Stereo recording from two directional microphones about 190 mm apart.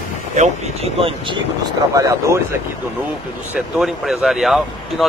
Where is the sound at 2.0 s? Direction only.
15° right (ahead or behind).